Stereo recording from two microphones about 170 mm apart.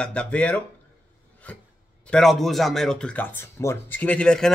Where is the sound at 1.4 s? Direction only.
10° left (ahead or behind).